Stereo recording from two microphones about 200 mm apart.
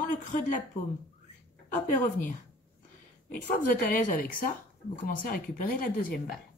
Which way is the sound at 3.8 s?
45° left (ahead or behind).